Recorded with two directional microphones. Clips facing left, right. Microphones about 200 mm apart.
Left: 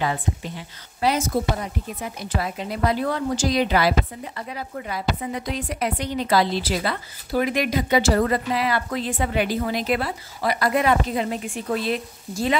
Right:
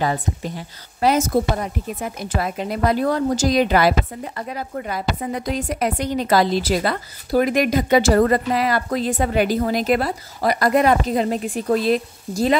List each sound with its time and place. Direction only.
0.0 s a woman's voice: 40° right (ahead or behind)